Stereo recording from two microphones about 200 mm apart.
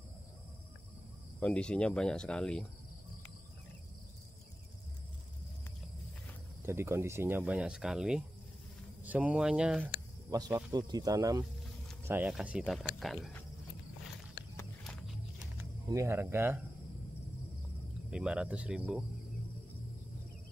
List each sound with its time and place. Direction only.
1.4 s speech: 5° left (ahead or behind)
6.6 s speech: 10° right (ahead or behind)
10.3 s speech: 20° right (ahead or behind); by 13.4 s centre (ahead or behind)
14.9 s wild animals: centre (ahead or behind)
15.9 s speech: 15° right (ahead or behind)
18.1 s speech: 5° right (ahead or behind)